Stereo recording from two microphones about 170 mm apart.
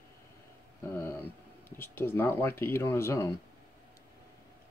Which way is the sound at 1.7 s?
10° left (ahead or behind).